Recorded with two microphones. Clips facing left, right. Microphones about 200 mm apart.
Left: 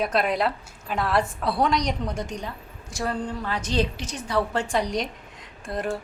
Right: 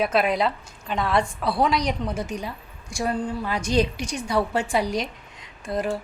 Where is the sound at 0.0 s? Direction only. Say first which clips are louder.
Right 2 dB; centre (ahead or behind).